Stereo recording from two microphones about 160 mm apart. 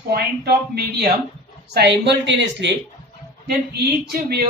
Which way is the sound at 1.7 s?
90° right.